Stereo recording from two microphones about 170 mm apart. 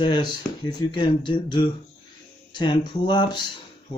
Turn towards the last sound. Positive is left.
turn(degrees=25)  # may be behind; listen again after turning